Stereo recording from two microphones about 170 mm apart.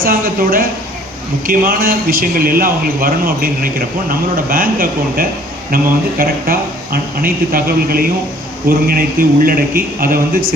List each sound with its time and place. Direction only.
0.0 s a man's voice: 60° right (ahead or behind)